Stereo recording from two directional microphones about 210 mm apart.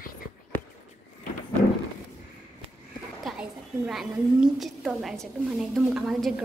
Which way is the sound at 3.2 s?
Centre (ahead or behind).